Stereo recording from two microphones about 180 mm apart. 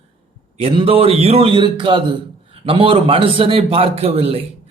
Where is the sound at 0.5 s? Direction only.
30° right (ahead or behind).